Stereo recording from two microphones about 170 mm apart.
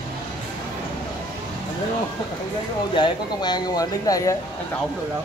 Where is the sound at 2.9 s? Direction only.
25° left (ahead or behind).